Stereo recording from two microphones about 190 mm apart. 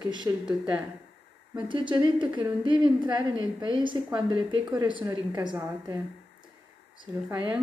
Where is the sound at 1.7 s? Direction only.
25° right (ahead or behind).